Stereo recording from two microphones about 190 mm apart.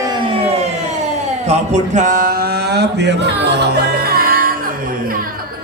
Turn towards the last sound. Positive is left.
turn(degrees=-50)  # may be behind; listen again after turning